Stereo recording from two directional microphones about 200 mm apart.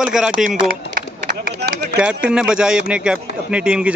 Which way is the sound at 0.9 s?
50° right (ahead or behind).